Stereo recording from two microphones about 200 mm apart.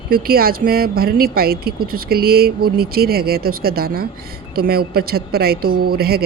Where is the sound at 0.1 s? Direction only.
50° right (ahead or behind).